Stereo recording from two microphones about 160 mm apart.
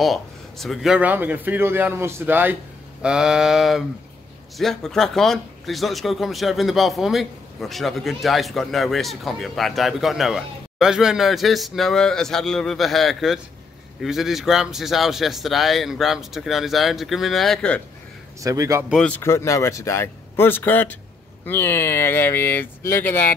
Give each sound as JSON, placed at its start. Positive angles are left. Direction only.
{"t": 0.0, "sound": "speech", "side_deg": 0}
{"t": 18.4, "sound": "speech", "side_deg": -20}
{"t": 18.9, "sound": "speech", "side_deg": 5}